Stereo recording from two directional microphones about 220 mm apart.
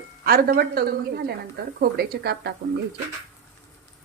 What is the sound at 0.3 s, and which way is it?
Speech, 45° right (ahead or behind).